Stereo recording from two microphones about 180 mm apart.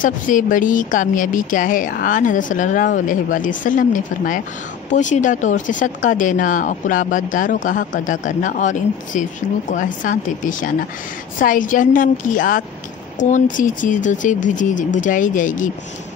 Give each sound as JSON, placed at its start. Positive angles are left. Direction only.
{"t": 0.0, "sound": "speech", "side_deg": 45}